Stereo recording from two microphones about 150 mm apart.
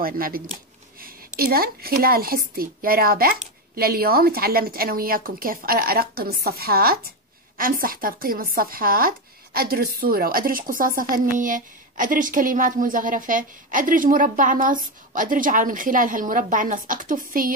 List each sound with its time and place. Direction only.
0.0 s a woman's voice: 75° right (ahead or behind)
7.5 s speech: 70° right (ahead or behind)